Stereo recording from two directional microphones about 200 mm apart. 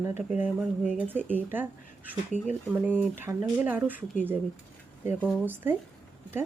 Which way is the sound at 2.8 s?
10° right (ahead or behind).